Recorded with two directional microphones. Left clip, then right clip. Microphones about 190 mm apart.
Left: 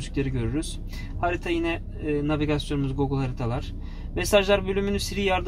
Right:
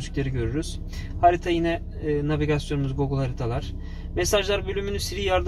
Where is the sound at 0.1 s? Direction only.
45° left (ahead or behind).